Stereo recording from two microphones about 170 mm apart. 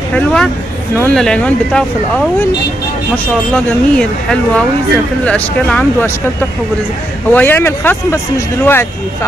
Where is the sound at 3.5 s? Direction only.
5° left (ahead or behind).